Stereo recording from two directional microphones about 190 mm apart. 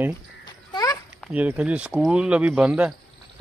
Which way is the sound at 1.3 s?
5° right (ahead or behind).